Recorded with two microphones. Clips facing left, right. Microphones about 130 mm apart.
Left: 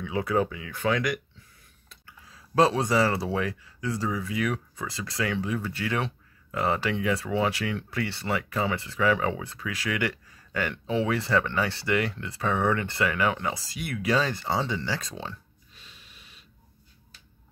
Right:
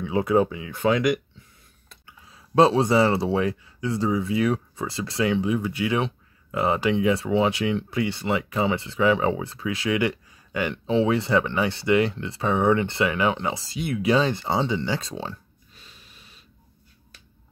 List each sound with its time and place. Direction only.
0.0 s speech: 25° right (ahead or behind)
15.8 s snort: 40° right (ahead or behind)